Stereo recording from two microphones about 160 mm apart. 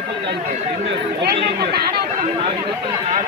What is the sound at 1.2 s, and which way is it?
Speech, 80° right.